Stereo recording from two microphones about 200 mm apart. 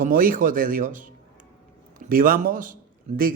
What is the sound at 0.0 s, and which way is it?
A man's voice, 45° right (ahead or behind).